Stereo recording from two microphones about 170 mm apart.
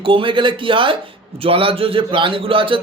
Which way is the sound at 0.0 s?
30° right (ahead or behind).